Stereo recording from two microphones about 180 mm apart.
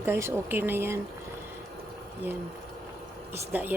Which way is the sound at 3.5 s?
10° right (ahead or behind).